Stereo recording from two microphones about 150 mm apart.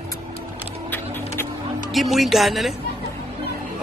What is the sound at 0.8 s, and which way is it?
Sewing machine, 15° left (ahead or behind).